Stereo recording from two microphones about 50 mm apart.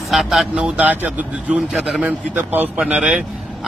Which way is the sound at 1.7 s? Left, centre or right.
Centre.